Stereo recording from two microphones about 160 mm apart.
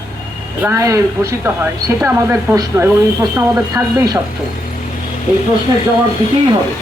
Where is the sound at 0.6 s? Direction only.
20° right (ahead or behind).